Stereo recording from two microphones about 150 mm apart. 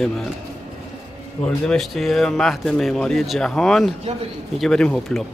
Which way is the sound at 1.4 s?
5° left (ahead or behind).